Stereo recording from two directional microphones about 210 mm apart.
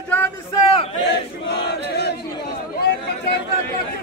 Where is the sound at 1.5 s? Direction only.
50° left (ahead or behind).